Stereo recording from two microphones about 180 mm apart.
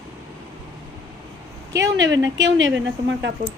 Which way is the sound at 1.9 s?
90° right.